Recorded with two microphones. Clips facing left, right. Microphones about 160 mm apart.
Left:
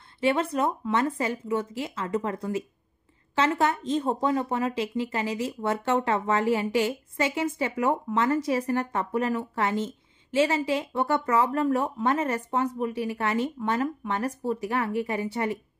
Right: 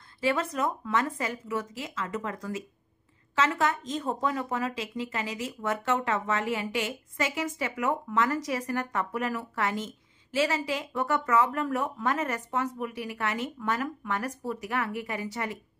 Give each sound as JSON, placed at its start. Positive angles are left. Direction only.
{"t": 0.2, "sound": "a woman's voice", "side_deg": 30}